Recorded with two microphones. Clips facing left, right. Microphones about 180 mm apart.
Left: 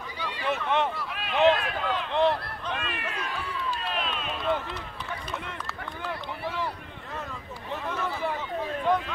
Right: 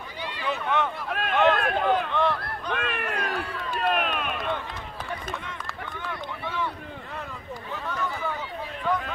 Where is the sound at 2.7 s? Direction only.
60° right (ahead or behind).